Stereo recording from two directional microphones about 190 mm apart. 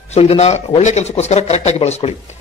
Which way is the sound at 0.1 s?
35° left (ahead or behind).